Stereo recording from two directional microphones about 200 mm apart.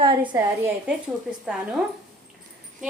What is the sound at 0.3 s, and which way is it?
Speech, 10° right (ahead or behind).